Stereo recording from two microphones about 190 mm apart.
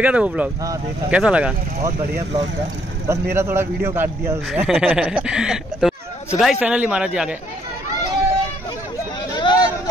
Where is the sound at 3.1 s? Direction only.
10° right (ahead or behind).